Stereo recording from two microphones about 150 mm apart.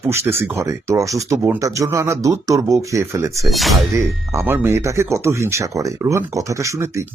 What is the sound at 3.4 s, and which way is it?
Speech, centre (ahead or behind).